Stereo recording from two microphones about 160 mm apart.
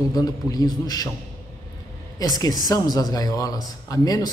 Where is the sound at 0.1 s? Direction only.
25° left (ahead or behind).